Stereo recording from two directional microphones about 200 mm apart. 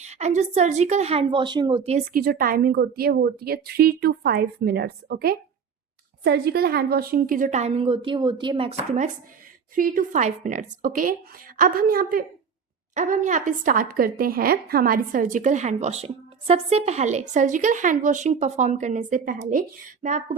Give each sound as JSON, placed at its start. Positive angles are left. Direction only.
{"t": 0.0, "sound": "speech", "side_deg": -35}
{"t": 2.1, "sound": "a woman's voice", "side_deg": -45}